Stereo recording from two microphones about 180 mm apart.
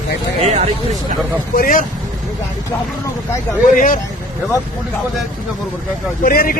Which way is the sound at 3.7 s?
45° left (ahead or behind).